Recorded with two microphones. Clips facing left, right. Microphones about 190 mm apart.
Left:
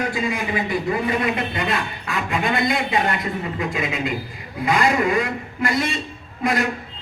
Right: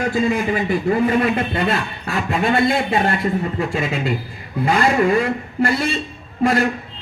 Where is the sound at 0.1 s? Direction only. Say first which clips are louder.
Right 5 dB; 45° right (ahead or behind).